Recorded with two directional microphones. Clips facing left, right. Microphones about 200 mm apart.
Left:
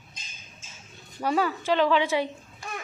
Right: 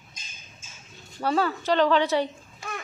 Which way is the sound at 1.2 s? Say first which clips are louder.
Right 1 dB; 10° left (ahead or behind).